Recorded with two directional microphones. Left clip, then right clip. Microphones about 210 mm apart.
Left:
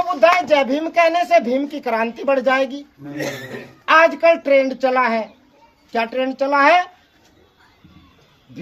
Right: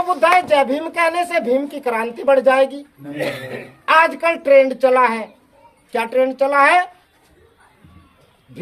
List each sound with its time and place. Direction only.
0.1 s speech: 20° right (ahead or behind)
3.2 s speech: 10° left (ahead or behind)
3.8 s speech: 30° right (ahead or behind); by 6.8 s 45° right (ahead or behind)